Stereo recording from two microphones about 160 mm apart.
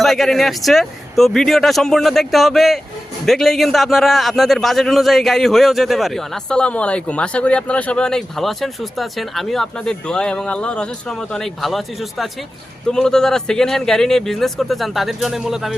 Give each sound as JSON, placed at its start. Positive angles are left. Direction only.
{"t": 0.0, "sound": "a man's voice", "side_deg": 0}